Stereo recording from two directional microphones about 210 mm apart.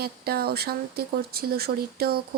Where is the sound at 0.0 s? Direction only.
50° right (ahead or behind).